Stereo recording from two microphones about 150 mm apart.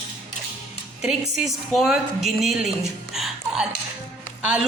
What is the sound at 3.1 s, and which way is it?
Music, centre (ahead or behind).